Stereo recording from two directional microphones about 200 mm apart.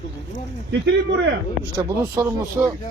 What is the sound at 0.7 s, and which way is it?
Speech, 60° right (ahead or behind).